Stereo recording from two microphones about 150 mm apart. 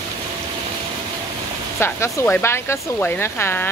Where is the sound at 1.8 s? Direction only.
15° left (ahead or behind).